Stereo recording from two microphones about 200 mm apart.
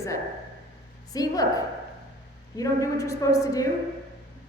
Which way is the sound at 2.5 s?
15° left (ahead or behind).